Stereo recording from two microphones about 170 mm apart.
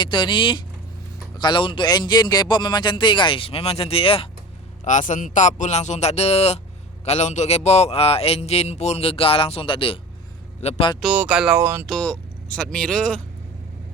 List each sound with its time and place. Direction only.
0.0 s a man's voice: 30° left (ahead or behind)
4.9 s speech: 45° left (ahead or behind)
11.0 s speech: 10° right (ahead or behind)
11.9 s speech: 5° left (ahead or behind)